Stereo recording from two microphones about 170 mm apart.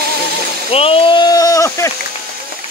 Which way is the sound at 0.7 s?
35° left (ahead or behind).